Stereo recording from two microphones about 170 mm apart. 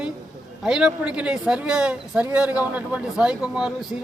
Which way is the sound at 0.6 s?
5° right (ahead or behind).